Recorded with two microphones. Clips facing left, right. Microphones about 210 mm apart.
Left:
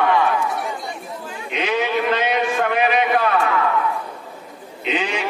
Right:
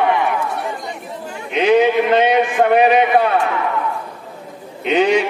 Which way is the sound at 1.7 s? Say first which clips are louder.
Right 8 dB; 25° right (ahead or behind).